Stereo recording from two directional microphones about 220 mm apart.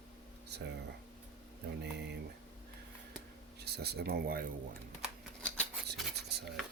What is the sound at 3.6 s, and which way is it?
Speech, 45° right (ahead or behind).